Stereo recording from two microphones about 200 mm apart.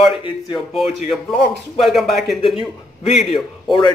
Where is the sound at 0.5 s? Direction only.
Centre (ahead or behind).